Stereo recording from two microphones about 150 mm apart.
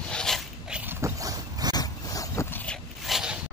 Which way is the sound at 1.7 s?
25° left (ahead or behind).